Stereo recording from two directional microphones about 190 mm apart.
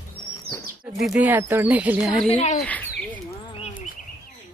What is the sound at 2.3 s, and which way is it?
Speech, 40° left (ahead or behind).